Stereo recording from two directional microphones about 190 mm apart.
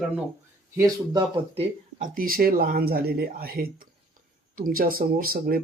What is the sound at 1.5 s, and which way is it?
Speech, 45° right (ahead or behind).